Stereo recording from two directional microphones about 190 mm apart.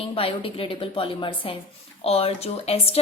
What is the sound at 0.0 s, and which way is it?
A woman's voice, 30° left (ahead or behind).